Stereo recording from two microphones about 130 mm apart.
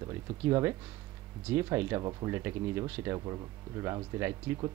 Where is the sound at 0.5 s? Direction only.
20° right (ahead or behind).